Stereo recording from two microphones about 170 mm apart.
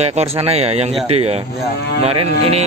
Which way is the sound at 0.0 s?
40° right (ahead or behind).